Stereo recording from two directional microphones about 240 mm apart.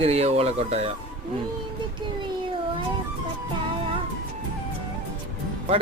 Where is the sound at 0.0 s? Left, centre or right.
Right.